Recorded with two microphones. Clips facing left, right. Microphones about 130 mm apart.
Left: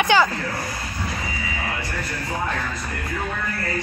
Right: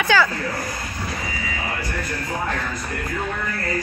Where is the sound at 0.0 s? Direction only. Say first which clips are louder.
Left 1 dB; 20° left (ahead or behind).